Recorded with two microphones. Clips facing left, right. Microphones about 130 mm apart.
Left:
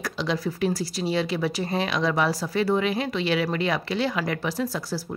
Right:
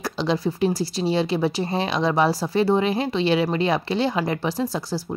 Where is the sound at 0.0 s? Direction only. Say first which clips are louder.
Right 4 dB; 30° right (ahead or behind).